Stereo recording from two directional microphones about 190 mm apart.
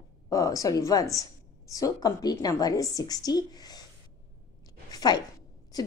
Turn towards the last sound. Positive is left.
turn(degrees=20)  # may be behind; listen again after turning